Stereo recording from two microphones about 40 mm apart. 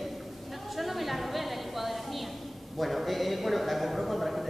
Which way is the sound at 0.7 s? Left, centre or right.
Centre.